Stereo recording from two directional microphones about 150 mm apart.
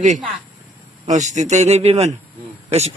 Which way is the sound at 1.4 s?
50° right (ahead or behind).